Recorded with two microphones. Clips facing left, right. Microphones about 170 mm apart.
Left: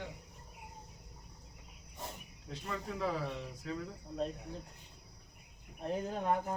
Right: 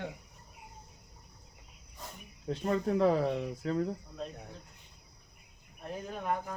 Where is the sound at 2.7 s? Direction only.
55° right (ahead or behind).